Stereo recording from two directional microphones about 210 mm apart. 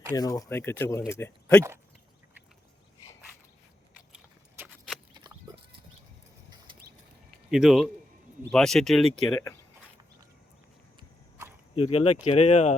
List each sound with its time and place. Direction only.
0.1 s speech: 15° left (ahead or behind)
4.1 s a sound: 10° right (ahead or behind)
5.1 s a sound: 20° right (ahead or behind)
7.5 s speech: centre (ahead or behind)
9.3 s speech: 15° left (ahead or behind)
11.7 s speech: 30° left (ahead or behind)